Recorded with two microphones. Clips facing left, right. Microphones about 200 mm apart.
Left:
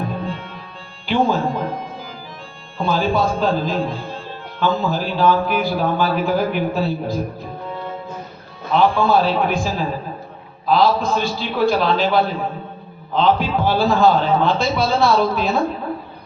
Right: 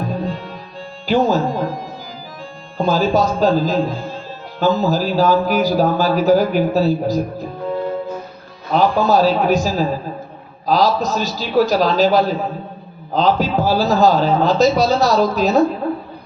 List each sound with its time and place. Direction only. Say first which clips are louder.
0.0 s music: right 3 dB; 40° right (ahead or behind)
1.0 s speech: right 3 dB; 40° right (ahead or behind)
8.7 s speech: right 1 dB; 40° right (ahead or behind)